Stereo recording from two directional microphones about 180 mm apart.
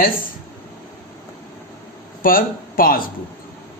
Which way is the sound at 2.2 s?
50° left (ahead or behind).